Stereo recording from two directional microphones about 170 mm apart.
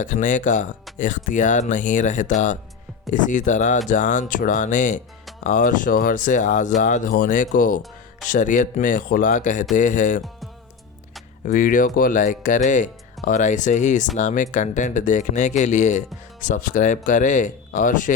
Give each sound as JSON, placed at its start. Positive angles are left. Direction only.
{"t": 0.0, "sound": "speech", "side_deg": 50}
{"t": 11.4, "sound": "speech", "side_deg": 50}